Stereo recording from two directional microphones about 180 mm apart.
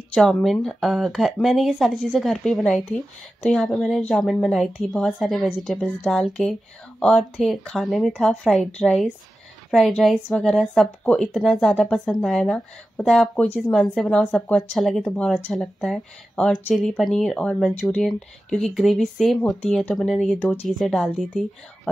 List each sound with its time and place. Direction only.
0.1 s speech: centre (ahead or behind)